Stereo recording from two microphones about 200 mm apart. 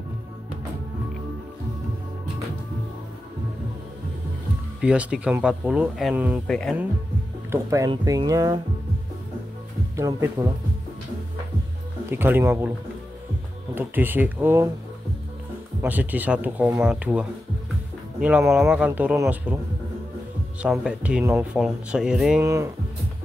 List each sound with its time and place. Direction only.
4.8 s speech: 5° right (ahead or behind)
6.4 s speech: 5° left (ahead or behind)
7.5 s speech: 15° right (ahead or behind)
9.9 s speech: 15° right (ahead or behind)
12.1 s speech: 10° right (ahead or behind)
13.7 s speech: 10° right (ahead or behind)
15.8 s speech: 10° right (ahead or behind)
20.6 s speech: 5° right (ahead or behind)
22.4 s speech: 15° right (ahead or behind)